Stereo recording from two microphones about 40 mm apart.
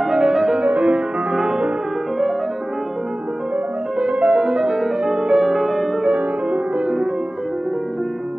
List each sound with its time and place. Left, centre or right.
0.2 s music: centre
0.6 s music: right
1.3 s music: centre
4.0 s music: right; by 5.9 s centre
6.0 s music: right
6.8 s music: centre